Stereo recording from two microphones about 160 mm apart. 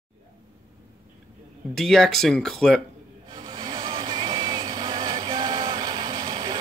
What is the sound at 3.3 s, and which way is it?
Vehicle, 25° right (ahead or behind).